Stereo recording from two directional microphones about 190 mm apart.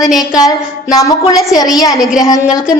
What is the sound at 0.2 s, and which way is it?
A woman's voice, 20° left (ahead or behind).